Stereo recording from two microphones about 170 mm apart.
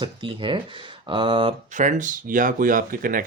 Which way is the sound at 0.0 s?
30° right (ahead or behind).